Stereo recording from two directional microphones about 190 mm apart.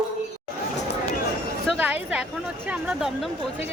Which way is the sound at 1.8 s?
10° right (ahead or behind).